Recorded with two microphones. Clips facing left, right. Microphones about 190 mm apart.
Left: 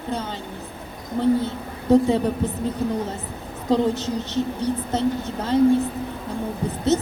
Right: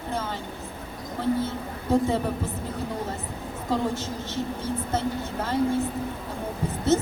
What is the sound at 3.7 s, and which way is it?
A woman's voice, 20° left (ahead or behind).